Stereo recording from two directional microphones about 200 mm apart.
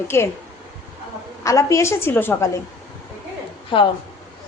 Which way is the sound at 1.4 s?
15° left (ahead or behind).